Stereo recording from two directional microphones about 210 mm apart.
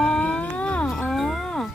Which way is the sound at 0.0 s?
5° left (ahead or behind).